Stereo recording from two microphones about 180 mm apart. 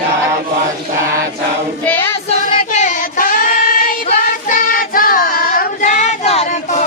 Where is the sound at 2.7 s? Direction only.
45° left (ahead or behind).